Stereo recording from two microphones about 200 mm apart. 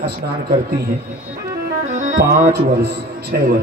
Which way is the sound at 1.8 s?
35° right (ahead or behind).